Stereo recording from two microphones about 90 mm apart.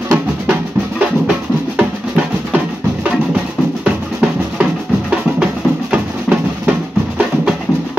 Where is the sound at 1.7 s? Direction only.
15° right (ahead or behind).